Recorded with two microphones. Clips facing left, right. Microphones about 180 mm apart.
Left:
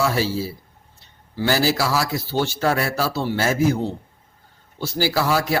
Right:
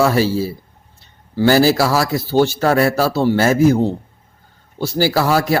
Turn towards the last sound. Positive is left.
turn(degrees=-45)  # may be behind; listen again after turning